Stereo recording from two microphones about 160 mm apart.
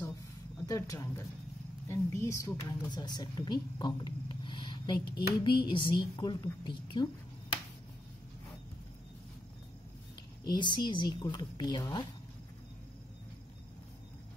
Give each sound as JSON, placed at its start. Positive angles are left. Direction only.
{"t": 0.7, "sound": "a woman's voice", "side_deg": 20}
{"t": 10.4, "sound": "a woman's voice", "side_deg": 30}